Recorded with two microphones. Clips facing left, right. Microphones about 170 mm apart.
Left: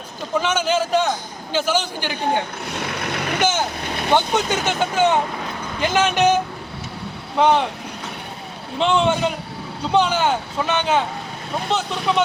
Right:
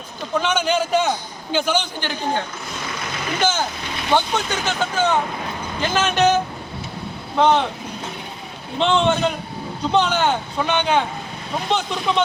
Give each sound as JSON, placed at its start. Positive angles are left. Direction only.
{"t": 0.3, "sound": "speech", "side_deg": 5}
{"t": 2.6, "sound": "vehicle", "side_deg": 65}
{"t": 4.1, "sound": "speech", "side_deg": 20}
{"t": 7.3, "sound": "speech", "side_deg": 10}
{"t": 8.8, "sound": "speech", "side_deg": 10}